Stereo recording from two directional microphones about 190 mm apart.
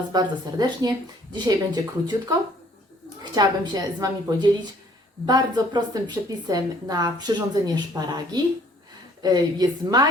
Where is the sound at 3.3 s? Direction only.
20° right (ahead or behind).